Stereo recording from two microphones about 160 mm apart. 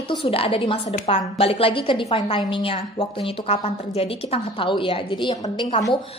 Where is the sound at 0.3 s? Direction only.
35° left (ahead or behind).